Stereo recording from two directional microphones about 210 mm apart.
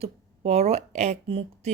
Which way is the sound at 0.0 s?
30° right (ahead or behind).